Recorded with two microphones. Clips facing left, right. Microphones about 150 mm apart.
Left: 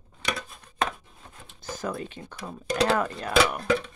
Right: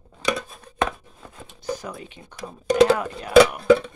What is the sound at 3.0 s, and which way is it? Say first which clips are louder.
Speech: right 8 dB; 10° right (ahead or behind).